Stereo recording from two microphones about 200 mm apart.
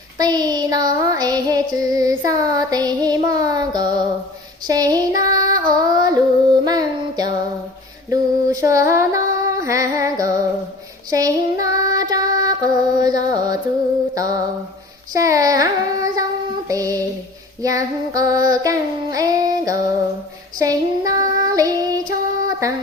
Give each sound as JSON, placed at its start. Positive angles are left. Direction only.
{"t": 0.2, "sound": "female singing", "side_deg": -20}
{"t": 15.1, "sound": "child singing", "side_deg": -15}